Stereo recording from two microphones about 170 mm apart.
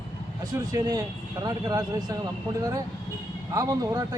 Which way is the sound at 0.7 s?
20° right (ahead or behind).